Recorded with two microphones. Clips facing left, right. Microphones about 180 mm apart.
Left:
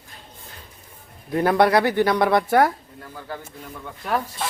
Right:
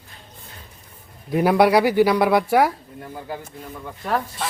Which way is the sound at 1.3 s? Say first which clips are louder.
Right 2 dB; 10° right (ahead or behind).